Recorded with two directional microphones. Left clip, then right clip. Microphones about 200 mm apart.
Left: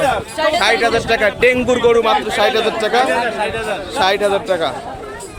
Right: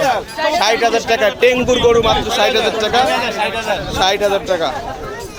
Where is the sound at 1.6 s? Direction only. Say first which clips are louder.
Right 1 dB; 10° left (ahead or behind).